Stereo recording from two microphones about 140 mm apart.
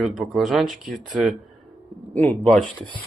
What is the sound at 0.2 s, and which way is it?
Speech, centre (ahead or behind).